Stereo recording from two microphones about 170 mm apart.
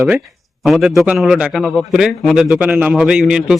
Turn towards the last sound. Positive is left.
turn(degrees=-5)  # may be behind; listen again after turning